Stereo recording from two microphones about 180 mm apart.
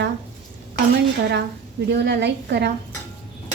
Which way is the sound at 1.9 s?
70° right (ahead or behind).